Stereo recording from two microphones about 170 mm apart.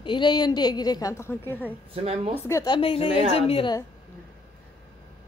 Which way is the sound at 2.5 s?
20° left (ahead or behind).